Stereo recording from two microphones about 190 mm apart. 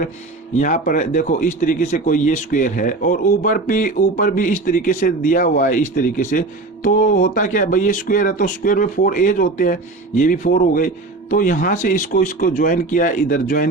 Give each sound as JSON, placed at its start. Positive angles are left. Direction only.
{"t": 0.5, "sound": "a man's voice", "side_deg": 40}